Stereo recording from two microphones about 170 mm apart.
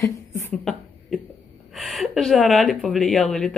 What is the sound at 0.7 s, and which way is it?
Cough, centre (ahead or behind).